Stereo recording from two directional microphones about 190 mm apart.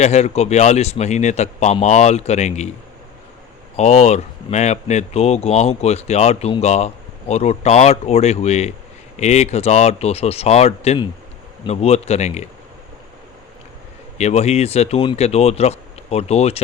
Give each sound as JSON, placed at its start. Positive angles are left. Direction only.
{"t": 0.0, "sound": "speech", "side_deg": 35}
{"t": 3.8, "sound": "speech", "side_deg": 35}
{"t": 14.2, "sound": "speech", "side_deg": 35}